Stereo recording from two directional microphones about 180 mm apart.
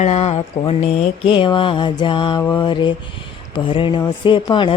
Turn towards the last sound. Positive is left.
turn(degrees=25)  # may be behind; listen again after turning